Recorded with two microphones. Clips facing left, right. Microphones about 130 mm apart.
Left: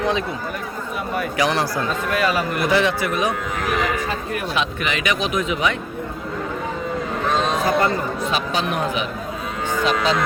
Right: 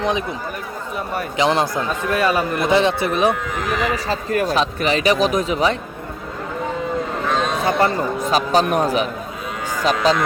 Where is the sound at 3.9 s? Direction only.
40° right (ahead or behind).